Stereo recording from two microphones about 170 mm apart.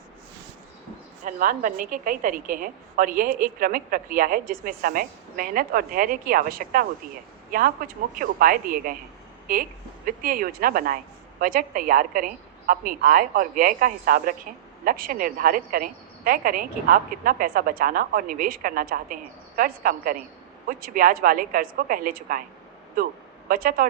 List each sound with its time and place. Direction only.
1.2 s a woman's voice: 50° right (ahead or behind)
23.5 s a woman's voice: 55° right (ahead or behind)